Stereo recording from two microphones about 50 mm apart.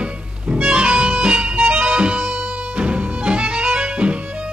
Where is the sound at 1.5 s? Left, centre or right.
Right.